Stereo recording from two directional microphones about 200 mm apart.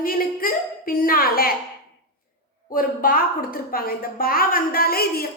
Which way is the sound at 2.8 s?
45° left (ahead or behind).